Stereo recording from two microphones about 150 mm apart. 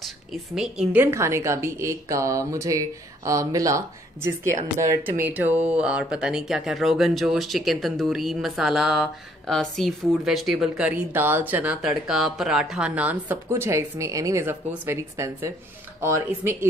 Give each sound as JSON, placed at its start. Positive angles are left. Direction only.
{"t": 0.6, "sound": "a woman's voice", "side_deg": -10}